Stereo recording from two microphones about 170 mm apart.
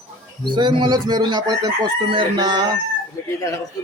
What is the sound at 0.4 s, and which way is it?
Speech, 25° right (ahead or behind).